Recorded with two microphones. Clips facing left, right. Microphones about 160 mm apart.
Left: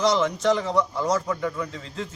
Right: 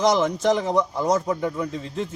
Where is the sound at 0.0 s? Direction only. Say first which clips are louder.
Right 2 dB; 20° right (ahead or behind).